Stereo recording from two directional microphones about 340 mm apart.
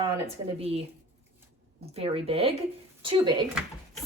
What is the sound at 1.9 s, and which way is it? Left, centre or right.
A woman's voice, centre.